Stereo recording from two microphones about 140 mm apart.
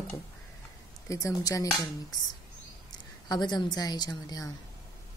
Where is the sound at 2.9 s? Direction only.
30° left (ahead or behind).